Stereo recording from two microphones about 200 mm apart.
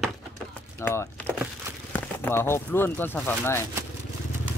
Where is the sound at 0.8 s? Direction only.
10° left (ahead or behind).